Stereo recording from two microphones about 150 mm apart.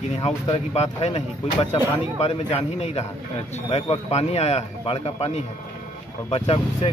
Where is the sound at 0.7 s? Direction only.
45° left (ahead or behind).